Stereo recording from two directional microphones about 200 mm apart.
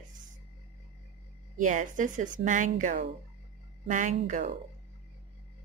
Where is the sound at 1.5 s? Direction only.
40° right (ahead or behind).